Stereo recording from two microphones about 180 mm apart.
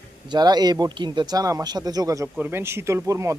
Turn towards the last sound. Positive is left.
turn(degrees=-15)  # may be behind; listen again after turning